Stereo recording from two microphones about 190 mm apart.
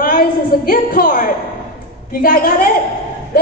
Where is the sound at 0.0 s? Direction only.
50° left (ahead or behind).